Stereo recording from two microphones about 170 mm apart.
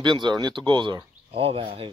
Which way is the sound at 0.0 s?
25° right (ahead or behind).